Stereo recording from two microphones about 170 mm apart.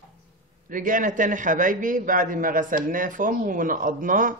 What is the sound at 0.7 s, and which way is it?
A man's voice, 50° right (ahead or behind).